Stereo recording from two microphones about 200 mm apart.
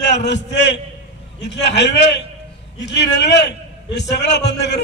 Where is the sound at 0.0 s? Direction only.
60° left (ahead or behind).